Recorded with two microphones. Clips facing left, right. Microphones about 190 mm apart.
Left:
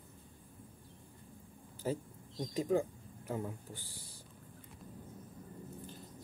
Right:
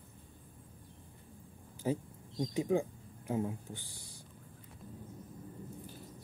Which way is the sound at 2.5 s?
15° right (ahead or behind).